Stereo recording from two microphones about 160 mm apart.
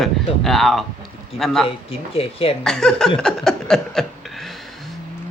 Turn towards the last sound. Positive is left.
turn(degrees=5)  # may be behind; listen again after turning